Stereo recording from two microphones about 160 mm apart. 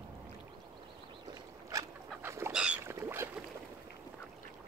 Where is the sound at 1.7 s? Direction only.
15° right (ahead or behind).